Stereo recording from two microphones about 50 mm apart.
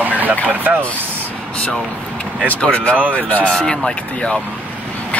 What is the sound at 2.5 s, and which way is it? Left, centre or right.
Speech, left.